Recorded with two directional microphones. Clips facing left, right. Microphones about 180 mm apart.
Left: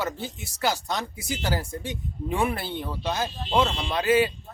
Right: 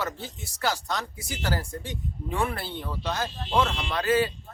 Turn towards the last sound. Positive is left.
turn(degrees=10)  # may be behind; listen again after turning